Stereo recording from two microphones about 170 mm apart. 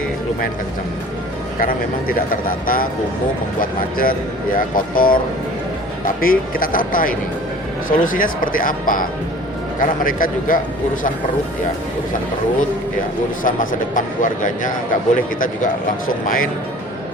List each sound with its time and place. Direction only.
1.5 s speech: 55° left (ahead or behind)
6.2 s speech: 55° left (ahead or behind)
13.4 s speech: 50° left (ahead or behind)